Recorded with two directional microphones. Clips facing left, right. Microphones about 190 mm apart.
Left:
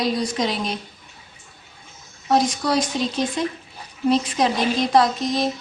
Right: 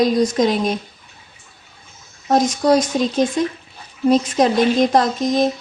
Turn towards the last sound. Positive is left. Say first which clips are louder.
# right 4 dB
turn(degrees=-45)  # may be behind; listen again after turning